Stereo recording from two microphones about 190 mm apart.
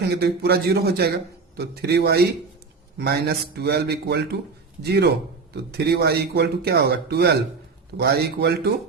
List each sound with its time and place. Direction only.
0.1 s speech: 55° right (ahead or behind)